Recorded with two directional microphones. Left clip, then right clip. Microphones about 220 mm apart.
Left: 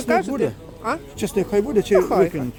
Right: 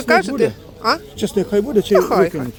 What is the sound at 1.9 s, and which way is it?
Speech, centre (ahead or behind).